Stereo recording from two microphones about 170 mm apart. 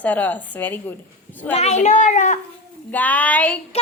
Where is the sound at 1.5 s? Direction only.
40° left (ahead or behind).